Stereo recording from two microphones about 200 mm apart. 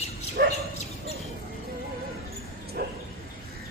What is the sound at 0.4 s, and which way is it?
Bow-wow, 55° right (ahead or behind).